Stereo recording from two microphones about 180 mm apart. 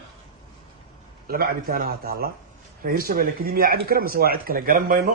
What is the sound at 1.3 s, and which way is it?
A man's voice, 60° right (ahead or behind).